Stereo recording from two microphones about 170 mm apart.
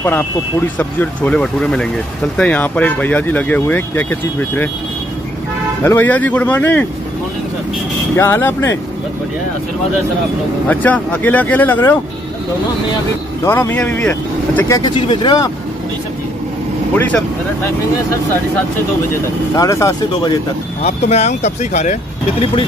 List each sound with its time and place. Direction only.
0.0 s speech: 15° left (ahead or behind)
5.8 s speech: 10° left (ahead or behind)
8.2 s speech: 15° left (ahead or behind)
10.7 s speech: 10° left (ahead or behind)
13.4 s speech: 15° left (ahead or behind)
19.5 s speech: 20° left (ahead or behind)
20.8 s speech: 40° left (ahead or behind)